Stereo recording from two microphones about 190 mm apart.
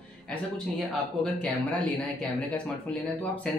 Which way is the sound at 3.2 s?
10° left (ahead or behind).